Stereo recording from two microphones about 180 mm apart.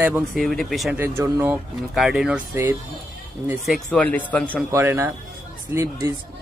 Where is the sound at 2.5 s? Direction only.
15° right (ahead or behind).